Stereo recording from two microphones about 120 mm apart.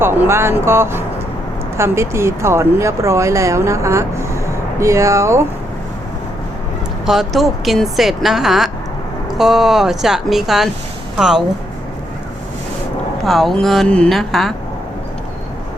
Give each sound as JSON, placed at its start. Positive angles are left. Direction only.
{"t": 0.0, "sound": "speech", "side_deg": -20}
{"t": 7.0, "sound": "speech", "side_deg": -5}
{"t": 13.2, "sound": "speech", "side_deg": 0}